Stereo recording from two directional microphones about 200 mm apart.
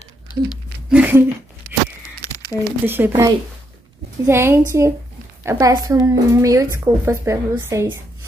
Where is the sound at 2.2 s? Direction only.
20° left (ahead or behind).